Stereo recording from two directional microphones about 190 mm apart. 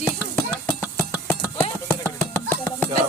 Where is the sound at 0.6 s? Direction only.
15° left (ahead or behind).